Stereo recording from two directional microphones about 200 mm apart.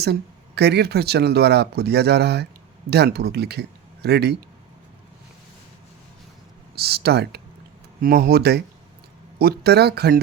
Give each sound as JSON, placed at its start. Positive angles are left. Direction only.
{"t": 0.0, "sound": "speech", "side_deg": -55}
{"t": 6.7, "sound": "speech", "side_deg": -50}